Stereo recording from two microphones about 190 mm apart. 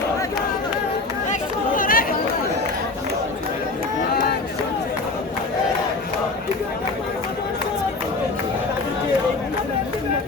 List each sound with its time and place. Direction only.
1.3 s chatter: 45° left (ahead or behind)